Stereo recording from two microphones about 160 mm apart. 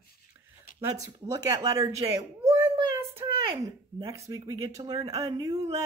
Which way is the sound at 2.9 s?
15° right (ahead or behind).